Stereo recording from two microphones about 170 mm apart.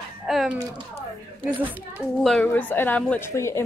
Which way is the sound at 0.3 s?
Centre (ahead or behind).